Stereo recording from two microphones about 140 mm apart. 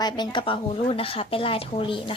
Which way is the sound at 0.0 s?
35° left (ahead or behind).